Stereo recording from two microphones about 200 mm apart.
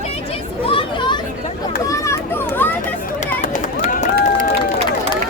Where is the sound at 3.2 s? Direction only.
40° left (ahead or behind).